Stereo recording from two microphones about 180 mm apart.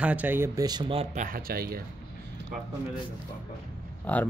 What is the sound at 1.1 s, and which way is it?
Speech, 50° right (ahead or behind).